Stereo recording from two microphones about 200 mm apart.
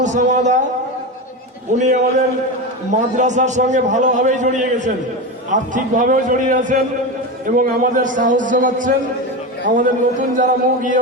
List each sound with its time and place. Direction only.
0.0 s a man's voice: 35° right (ahead or behind)
1.7 s a man's voice: 35° right (ahead or behind)